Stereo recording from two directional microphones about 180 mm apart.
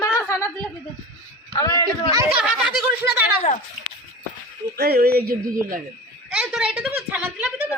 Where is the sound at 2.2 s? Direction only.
5° right (ahead or behind).